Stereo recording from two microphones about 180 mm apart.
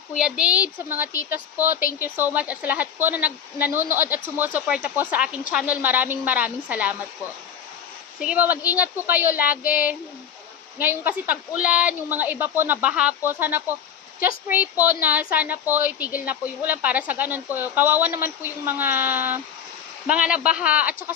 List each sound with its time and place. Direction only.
0.1 s a woman's voice: 5° right (ahead or behind)
1.7 s speech: 50° left (ahead or behind)
2.0 s a woman's voice: 10° right (ahead or behind)
8.2 s a woman's voice: 10° right (ahead or behind)
10.8 s a woman's voice: 10° right (ahead or behind)